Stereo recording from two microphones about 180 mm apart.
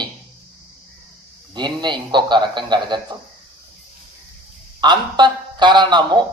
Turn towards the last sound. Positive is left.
turn(degrees=-25)  # may be behind; listen again after turning